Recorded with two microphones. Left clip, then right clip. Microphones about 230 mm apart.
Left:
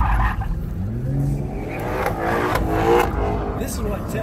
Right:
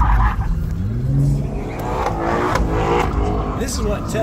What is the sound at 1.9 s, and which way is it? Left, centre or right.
Music, left.